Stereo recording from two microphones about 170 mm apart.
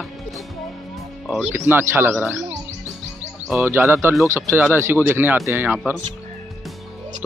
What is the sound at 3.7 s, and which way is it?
Speech, 15° right (ahead or behind).